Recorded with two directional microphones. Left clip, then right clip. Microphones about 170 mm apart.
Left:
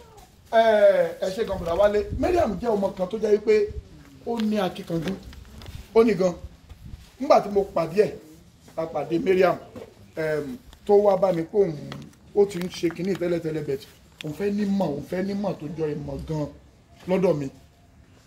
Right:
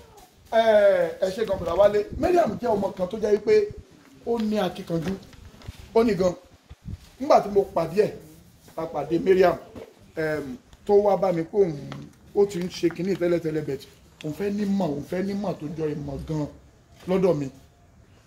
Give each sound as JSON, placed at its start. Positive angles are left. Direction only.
{"t": 0.5, "sound": "speech", "side_deg": -10}